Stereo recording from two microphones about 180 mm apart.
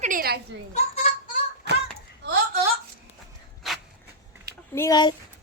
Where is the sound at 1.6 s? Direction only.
70° right (ahead or behind).